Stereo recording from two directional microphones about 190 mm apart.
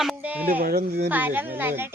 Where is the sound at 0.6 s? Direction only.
50° right (ahead or behind).